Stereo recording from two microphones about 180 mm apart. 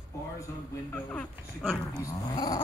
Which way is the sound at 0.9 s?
10° left (ahead or behind).